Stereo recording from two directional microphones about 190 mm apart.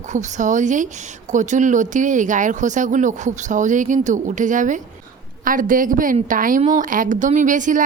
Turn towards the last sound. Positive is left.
turn(degrees=-40)  # may be behind; listen again after turning